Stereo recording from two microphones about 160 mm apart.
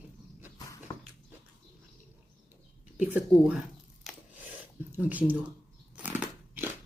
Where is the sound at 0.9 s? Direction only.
25° left (ahead or behind).